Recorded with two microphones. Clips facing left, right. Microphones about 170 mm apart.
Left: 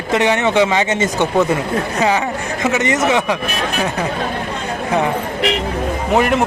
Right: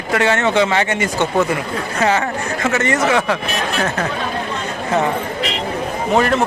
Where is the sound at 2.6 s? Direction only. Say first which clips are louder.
Left 1 dB; 20° left (ahead or behind).